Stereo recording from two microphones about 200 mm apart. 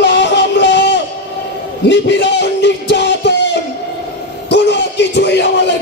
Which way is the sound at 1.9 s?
60° left (ahead or behind).